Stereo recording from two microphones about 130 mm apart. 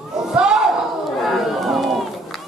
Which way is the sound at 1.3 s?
Centre (ahead or behind).